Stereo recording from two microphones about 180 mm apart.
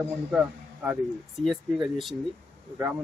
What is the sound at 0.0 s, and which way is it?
A man's voice, 10° right (ahead or behind).